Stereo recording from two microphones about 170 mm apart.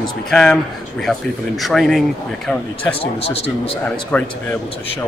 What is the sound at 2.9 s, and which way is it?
Speech, 35° left (ahead or behind).